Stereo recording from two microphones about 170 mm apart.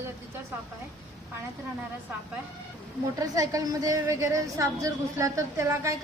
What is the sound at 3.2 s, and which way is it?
A woman's voice, 20° right (ahead or behind).